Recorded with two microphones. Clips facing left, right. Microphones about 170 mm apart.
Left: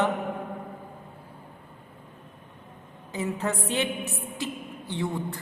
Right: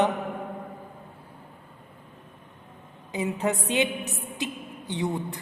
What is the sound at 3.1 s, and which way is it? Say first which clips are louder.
A woman's voice: right 2 dB; 15° right (ahead or behind).